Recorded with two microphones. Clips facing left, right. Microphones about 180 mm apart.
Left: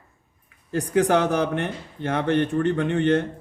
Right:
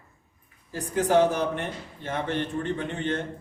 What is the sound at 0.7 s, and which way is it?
A man's voice, 75° left (ahead or behind).